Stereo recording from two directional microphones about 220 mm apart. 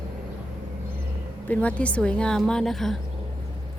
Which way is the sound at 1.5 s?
5° left (ahead or behind).